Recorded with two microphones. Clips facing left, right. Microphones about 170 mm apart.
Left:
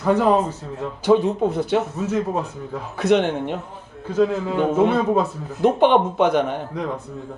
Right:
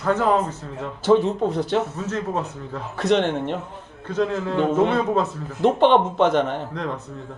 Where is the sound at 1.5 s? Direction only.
5° left (ahead or behind).